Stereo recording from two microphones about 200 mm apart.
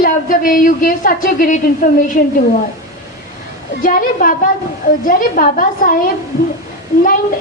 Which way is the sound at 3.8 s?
45° left (ahead or behind).